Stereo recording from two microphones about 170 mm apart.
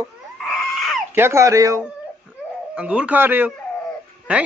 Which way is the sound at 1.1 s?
15° right (ahead or behind).